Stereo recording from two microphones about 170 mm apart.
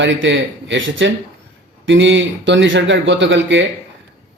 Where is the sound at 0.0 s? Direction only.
90° right.